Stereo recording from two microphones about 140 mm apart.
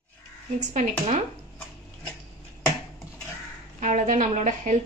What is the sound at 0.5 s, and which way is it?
Speech, 60° right (ahead or behind).